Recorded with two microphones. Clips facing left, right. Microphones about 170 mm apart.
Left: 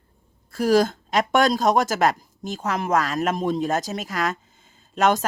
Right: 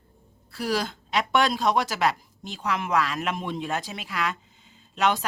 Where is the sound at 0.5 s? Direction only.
45° left (ahead or behind).